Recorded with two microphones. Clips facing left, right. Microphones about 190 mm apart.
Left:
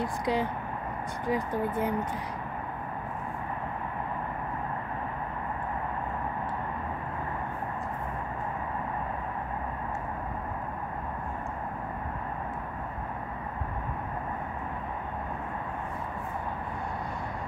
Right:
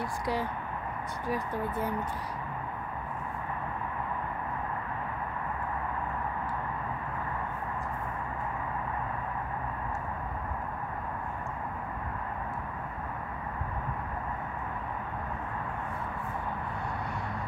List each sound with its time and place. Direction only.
0.0 s speech: 20° left (ahead or behind)